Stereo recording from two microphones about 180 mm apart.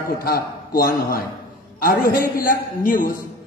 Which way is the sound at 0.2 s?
55° left (ahead or behind).